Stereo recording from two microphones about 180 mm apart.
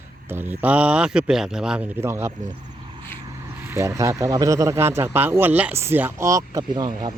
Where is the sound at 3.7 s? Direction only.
15° right (ahead or behind).